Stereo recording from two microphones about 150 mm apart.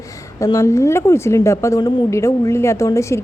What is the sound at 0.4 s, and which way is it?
Speech, 20° left (ahead or behind).